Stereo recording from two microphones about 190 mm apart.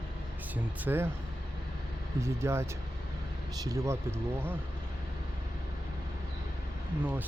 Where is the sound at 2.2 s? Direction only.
15° right (ahead or behind).